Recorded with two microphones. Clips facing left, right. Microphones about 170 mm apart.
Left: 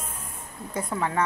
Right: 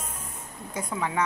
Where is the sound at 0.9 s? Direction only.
Centre (ahead or behind).